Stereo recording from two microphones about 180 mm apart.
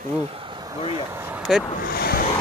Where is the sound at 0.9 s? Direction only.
20° right (ahead or behind).